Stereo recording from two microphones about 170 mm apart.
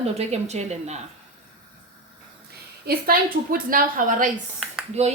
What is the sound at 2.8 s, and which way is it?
A woman's voice, 60° right (ahead or behind).